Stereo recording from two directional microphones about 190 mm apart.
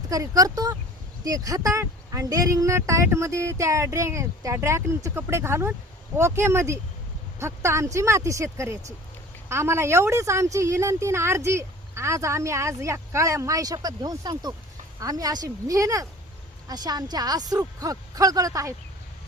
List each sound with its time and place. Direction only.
0.1 s a woman's voice: 20° right (ahead or behind)